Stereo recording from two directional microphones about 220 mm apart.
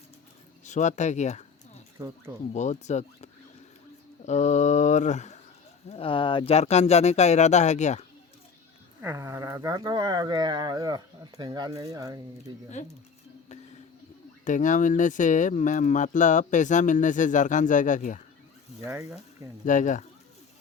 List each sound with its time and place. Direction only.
0.6 s speech: 35° left (ahead or behind)
2.0 s speech: 15° right (ahead or behind)
2.5 s speech: 30° left (ahead or behind)
4.3 s speech: 30° left (ahead or behind)
9.0 s speech: 10° right (ahead or behind)
14.4 s speech: 35° left (ahead or behind)
18.9 s speech: 15° right (ahead or behind)
19.6 s speech: 35° left (ahead or behind)